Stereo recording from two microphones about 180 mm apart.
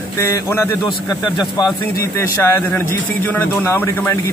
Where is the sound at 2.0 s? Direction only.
15° left (ahead or behind).